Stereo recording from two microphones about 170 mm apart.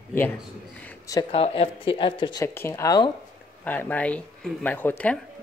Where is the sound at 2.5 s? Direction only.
15° left (ahead or behind).